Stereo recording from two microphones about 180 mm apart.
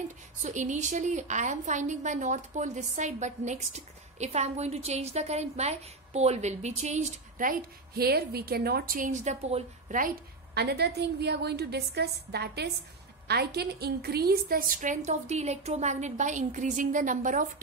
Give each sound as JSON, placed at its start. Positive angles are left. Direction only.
{"t": 0.4, "sound": "a woman's voice", "side_deg": -40}